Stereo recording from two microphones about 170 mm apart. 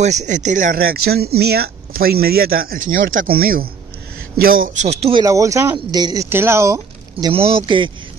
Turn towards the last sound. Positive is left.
turn(degrees=-30)  # may be behind; listen again after turning